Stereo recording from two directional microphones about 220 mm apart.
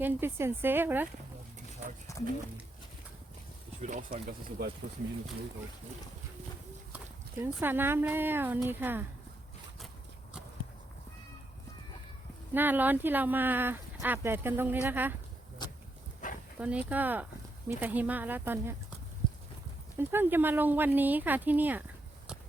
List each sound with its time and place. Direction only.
0.0 s speech: 10° right (ahead or behind)
2.1 s a sound: 15° left (ahead or behind)
3.8 s speech: 35° right (ahead or behind)
6.9 s speech: 5° right (ahead or behind)
12.5 s speech: 10° right (ahead or behind)
15.6 s dog: 20° left (ahead or behind)
16.6 s speech: 5° right (ahead or behind)
20.0 s speech: 10° right (ahead or behind)